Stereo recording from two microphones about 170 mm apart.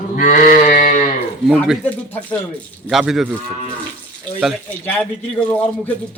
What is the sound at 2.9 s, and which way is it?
Speech, centre (ahead or behind).